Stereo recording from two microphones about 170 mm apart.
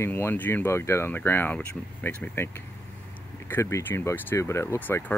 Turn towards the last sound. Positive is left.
turn(degrees=15)  # may be behind; listen again after turning